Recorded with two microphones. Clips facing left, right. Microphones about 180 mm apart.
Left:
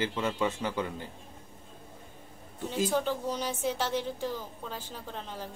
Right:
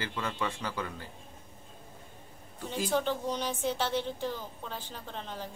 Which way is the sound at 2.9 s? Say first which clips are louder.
Even; 10° left (ahead or behind).